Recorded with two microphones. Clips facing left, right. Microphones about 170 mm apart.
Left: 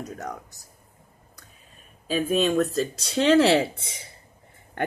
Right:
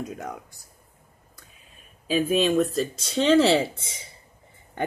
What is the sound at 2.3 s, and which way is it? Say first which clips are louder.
Speech: even; centre (ahead or behind).